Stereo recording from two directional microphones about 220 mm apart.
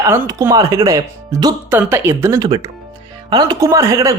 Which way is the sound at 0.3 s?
15° right (ahead or behind).